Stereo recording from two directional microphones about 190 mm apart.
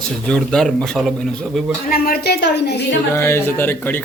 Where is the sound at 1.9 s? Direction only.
50° left (ahead or behind).